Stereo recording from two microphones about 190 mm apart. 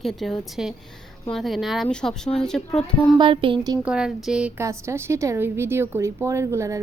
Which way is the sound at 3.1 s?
25° right (ahead or behind).